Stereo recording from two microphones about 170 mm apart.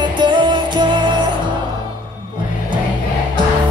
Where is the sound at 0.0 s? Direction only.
25° right (ahead or behind).